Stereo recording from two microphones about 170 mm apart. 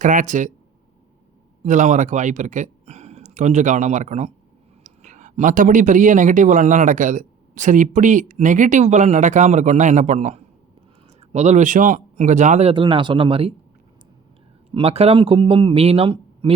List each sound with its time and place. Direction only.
0.0 s speech: 50° right (ahead or behind)
1.6 s speech: 45° right (ahead or behind)
14.7 s speech: 35° right (ahead or behind)